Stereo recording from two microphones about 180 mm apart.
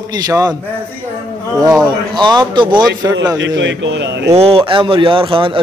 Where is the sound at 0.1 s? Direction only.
20° right (ahead or behind).